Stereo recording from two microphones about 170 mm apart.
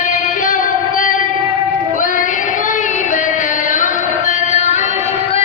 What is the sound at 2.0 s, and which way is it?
Female singing, 50° left (ahead or behind).